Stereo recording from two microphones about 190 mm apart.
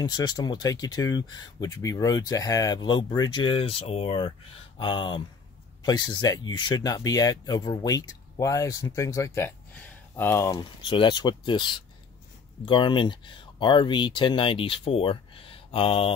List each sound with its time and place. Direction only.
0.0 s speech: 20° left (ahead or behind)